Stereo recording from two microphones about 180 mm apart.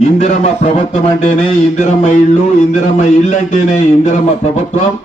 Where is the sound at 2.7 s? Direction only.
40° left (ahead or behind).